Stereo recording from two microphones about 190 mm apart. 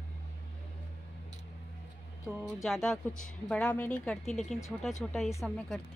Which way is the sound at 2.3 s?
5° left (ahead or behind).